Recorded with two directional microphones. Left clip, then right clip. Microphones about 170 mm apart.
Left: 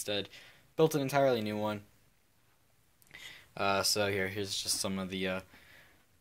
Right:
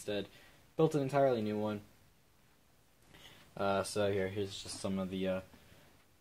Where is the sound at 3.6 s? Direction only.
15° left (ahead or behind).